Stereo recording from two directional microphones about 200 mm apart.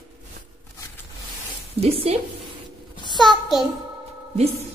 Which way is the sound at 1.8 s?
30° right (ahead or behind).